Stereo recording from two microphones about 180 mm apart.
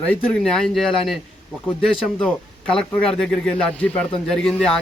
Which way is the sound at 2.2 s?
5° left (ahead or behind).